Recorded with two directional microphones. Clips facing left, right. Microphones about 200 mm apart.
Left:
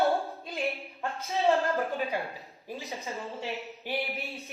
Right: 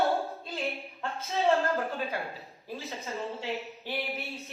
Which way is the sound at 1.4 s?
Centre (ahead or behind).